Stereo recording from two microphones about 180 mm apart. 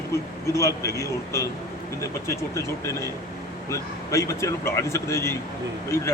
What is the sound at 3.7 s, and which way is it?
A man's voice, 15° left (ahead or behind).